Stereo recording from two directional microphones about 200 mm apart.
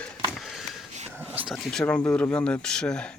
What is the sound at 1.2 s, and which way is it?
Speech, 5° right (ahead or behind).